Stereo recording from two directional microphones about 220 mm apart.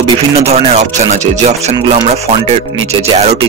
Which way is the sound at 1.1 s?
30° right (ahead or behind).